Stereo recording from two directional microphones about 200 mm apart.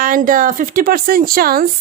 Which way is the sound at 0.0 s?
45° right (ahead or behind).